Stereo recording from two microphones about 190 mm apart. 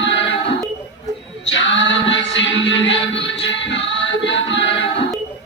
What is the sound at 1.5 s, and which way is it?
Music, 70° left (ahead or behind).